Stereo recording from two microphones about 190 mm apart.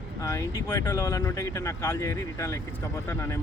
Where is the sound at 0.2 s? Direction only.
15° left (ahead or behind).